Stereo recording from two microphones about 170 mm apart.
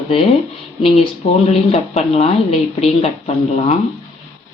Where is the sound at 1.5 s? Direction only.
40° left (ahead or behind).